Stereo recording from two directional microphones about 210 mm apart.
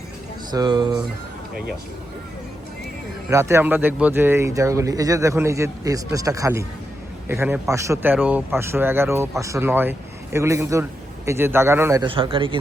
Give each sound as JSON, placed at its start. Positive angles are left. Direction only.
{"t": 0.5, "sound": "a man's voice", "side_deg": -20}
{"t": 3.2, "sound": "speech", "side_deg": -15}
{"t": 12.0, "sound": "a man's voice", "side_deg": -25}